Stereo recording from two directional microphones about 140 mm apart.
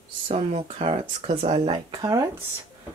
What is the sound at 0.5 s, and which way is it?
Speech, 55° right (ahead or behind).